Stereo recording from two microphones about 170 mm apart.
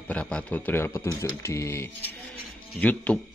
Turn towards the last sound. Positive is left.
turn(degrees=10)  # may be behind; listen again after turning